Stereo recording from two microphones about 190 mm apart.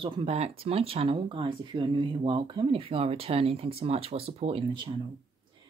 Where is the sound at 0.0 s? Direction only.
30° right (ahead or behind).